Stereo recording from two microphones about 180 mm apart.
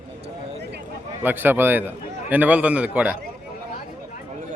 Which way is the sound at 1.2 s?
10° right (ahead or behind).